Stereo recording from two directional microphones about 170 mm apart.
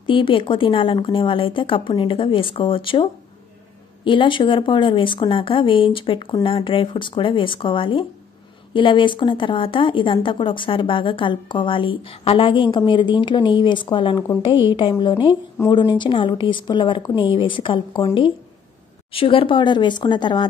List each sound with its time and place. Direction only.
0.0 s speech: 30° left (ahead or behind)